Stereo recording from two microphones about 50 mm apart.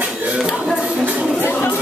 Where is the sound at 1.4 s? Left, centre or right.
Left.